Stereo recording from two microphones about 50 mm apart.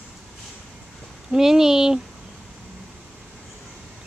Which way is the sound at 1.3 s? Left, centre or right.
Centre.